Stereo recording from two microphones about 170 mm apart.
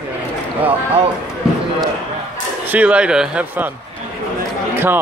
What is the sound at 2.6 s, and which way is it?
Speech, 10° right (ahead or behind).